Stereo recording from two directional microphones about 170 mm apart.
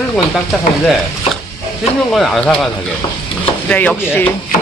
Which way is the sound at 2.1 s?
Centre (ahead or behind).